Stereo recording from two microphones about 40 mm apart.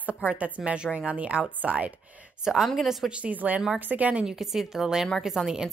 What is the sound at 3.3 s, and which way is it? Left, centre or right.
Speech, right.